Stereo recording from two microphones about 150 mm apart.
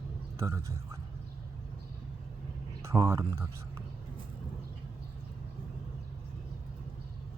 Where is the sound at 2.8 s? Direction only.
20° right (ahead or behind).